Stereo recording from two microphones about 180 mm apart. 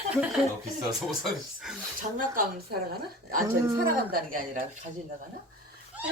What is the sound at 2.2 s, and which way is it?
Speech, 50° right (ahead or behind).